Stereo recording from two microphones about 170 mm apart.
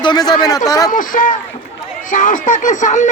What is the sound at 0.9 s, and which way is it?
Speech, 50° left (ahead or behind).